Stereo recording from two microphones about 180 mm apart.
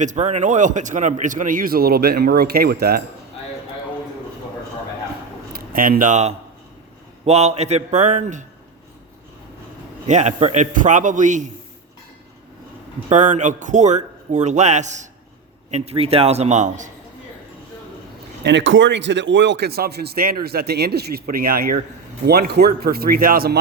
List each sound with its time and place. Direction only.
0.0 s speech: 40° right (ahead or behind); by 3.0 s 60° right (ahead or behind)
5.5 s a man's voice: 55° right (ahead or behind)
10.1 s speech: 40° right (ahead or behind)
13.1 s a man's voice: 40° right (ahead or behind)
18.4 s a man's voice: 90° right; by 23.6 s 55° right (ahead or behind)